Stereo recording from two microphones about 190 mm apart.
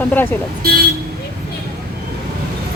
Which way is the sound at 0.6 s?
55° right (ahead or behind).